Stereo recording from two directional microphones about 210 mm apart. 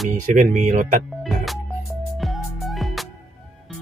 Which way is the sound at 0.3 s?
35° right (ahead or behind).